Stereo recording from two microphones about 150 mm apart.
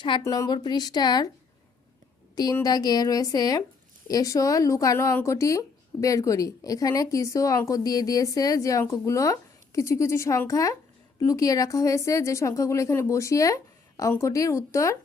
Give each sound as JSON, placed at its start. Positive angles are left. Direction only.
{"t": 0.2, "sound": "speech", "side_deg": 25}
{"t": 2.3, "sound": "a woman's voice", "side_deg": 25}